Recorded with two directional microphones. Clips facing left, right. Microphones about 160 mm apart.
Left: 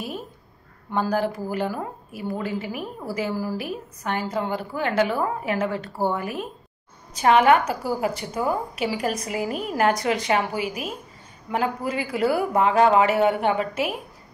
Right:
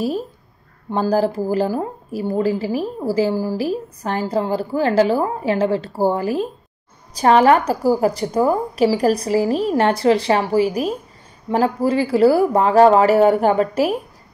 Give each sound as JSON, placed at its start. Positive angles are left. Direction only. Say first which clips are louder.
{"t": 0.8, "sound": "speech", "louder": "right 6 dB", "side_deg": -30}